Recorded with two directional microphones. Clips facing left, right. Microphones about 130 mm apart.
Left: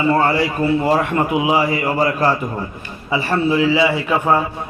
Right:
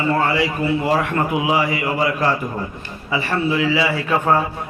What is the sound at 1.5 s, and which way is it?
A man's voice, 30° left (ahead or behind).